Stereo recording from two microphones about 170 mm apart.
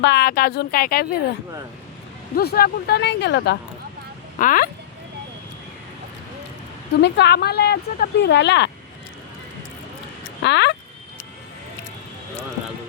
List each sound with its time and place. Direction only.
0.0 s a woman's voice: 80° left; by 1.2 s 60° left (ahead or behind)
2.3 s speech: 65° left (ahead or behind); by 3.6 s 85° left
4.4 s speech: 55° left (ahead or behind)
7.0 s speech: 85° left
10.4 s speech: 90° left